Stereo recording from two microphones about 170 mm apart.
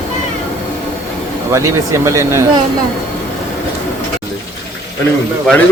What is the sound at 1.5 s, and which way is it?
Speech, 15° right (ahead or behind).